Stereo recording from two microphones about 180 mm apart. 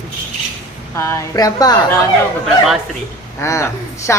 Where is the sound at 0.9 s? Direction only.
15° left (ahead or behind).